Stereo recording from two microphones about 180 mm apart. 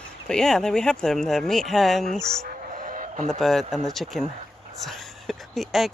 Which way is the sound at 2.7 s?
45° right (ahead or behind).